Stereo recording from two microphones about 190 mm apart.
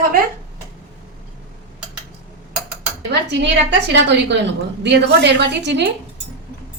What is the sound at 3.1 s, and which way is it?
A woman's voice, 65° right (ahead or behind).